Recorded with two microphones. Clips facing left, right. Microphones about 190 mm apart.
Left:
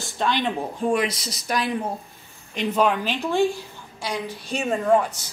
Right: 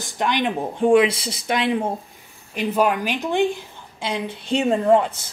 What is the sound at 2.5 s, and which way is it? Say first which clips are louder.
A woman's voice: right 1 dB; 10° right (ahead or behind).